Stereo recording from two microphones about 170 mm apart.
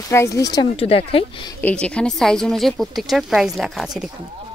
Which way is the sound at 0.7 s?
35° left (ahead or behind).